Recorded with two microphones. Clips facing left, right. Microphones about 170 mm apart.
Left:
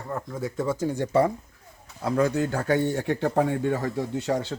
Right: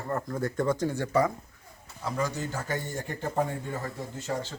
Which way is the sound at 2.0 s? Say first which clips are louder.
Left 8 dB; 60° left (ahead or behind).